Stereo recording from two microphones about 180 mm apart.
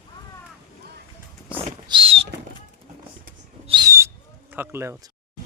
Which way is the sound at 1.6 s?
35° right (ahead or behind).